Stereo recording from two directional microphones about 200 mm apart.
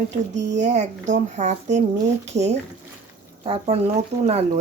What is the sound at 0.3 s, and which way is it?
Speech, 60° right (ahead or behind).